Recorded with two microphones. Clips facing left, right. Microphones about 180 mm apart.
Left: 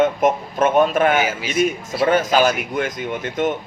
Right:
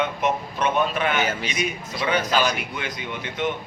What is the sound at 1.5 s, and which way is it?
A man's voice, 45° left (ahead or behind).